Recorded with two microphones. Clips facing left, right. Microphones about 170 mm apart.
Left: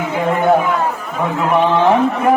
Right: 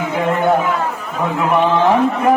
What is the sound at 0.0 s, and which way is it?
Speech, centre (ahead or behind).